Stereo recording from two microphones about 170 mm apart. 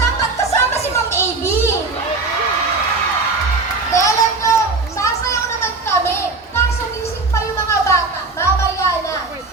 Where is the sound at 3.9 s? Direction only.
20° left (ahead or behind).